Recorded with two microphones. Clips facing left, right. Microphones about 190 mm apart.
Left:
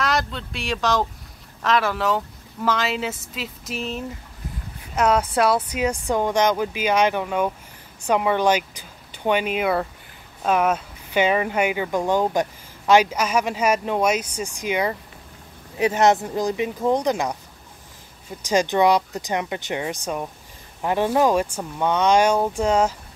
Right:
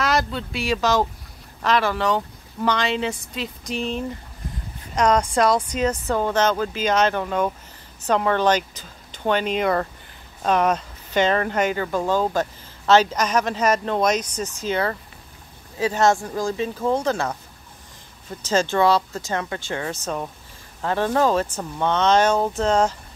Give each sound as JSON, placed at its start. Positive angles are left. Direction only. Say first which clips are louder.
{"t": 0.0, "sound": "speech", "louder": "right 2 dB", "side_deg": 0}
{"t": 18.4, "sound": "speech", "louder": "left 1 dB", "side_deg": 15}